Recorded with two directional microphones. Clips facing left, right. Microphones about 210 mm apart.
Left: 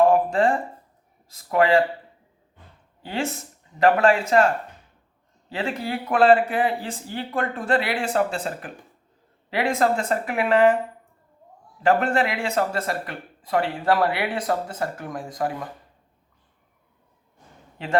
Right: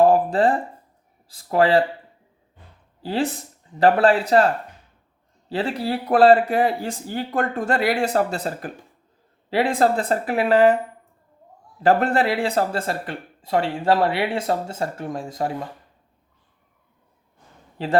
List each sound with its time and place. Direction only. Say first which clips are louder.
0.0 s a sound: right 2 dB; 35° right (ahead or behind)
1.3 s speech: right 1 dB; 30° right (ahead or behind)
3.0 s speech: right 4 dB; 35° right (ahead or behind)
11.8 s speech: right 2 dB; 35° right (ahead or behind)
17.8 s speech: right 5 dB; 35° right (ahead or behind)